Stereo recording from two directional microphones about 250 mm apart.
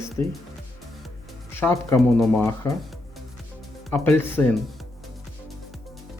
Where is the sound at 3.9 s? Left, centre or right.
Centre.